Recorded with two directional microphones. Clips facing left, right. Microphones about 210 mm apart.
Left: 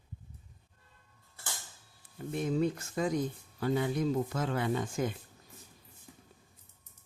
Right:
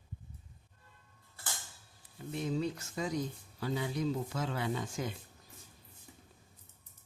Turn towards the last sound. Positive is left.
turn(degrees=50)  # may be behind; listen again after turning